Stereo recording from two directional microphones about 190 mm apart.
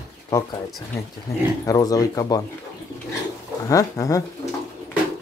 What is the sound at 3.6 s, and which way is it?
Speech, 15° left (ahead or behind).